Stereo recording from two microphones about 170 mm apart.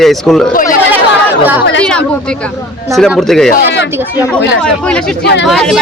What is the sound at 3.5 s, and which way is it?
Speech, 75° left (ahead or behind).